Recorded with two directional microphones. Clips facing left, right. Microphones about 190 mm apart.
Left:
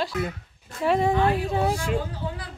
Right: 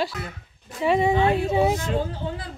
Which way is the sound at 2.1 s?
25° right (ahead or behind).